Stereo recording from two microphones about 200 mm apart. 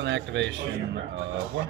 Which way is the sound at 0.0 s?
65° right (ahead or behind).